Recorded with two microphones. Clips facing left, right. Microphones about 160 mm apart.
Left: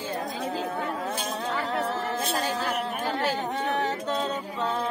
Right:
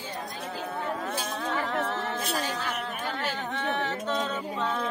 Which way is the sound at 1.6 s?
35° left (ahead or behind).